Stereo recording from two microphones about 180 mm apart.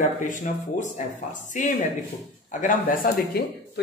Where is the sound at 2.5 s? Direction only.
45° left (ahead or behind).